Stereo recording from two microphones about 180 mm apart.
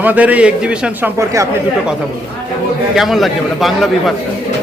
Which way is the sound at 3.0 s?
Centre (ahead or behind).